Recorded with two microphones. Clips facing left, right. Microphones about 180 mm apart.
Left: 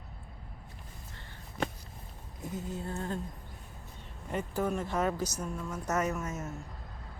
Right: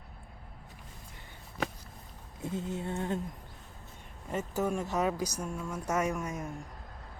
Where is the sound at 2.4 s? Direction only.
25° right (ahead or behind).